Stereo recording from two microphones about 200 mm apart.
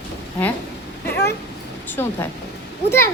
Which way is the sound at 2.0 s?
10° left (ahead or behind).